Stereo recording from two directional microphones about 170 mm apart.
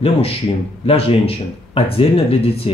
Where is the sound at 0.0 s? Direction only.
35° left (ahead or behind).